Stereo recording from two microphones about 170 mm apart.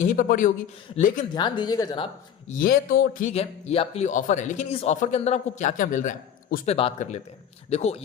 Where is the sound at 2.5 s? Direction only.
55° left (ahead or behind).